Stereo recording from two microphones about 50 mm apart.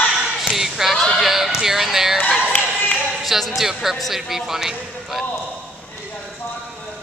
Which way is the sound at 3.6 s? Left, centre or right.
Centre.